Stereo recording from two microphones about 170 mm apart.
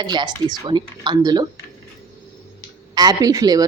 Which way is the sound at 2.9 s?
20° right (ahead or behind).